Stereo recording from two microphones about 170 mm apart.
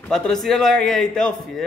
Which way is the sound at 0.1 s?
5° left (ahead or behind).